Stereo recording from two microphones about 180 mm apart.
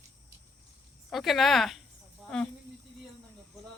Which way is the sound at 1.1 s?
Centre (ahead or behind).